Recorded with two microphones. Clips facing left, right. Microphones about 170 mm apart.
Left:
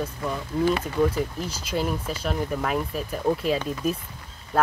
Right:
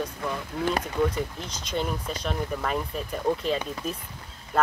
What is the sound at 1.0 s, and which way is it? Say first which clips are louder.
Speech: left 3 dB; 5° left (ahead or behind).